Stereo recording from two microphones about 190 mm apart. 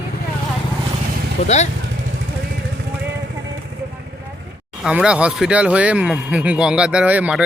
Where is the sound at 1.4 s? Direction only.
35° left (ahead or behind).